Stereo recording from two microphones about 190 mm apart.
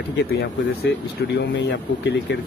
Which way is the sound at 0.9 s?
65° left (ahead or behind).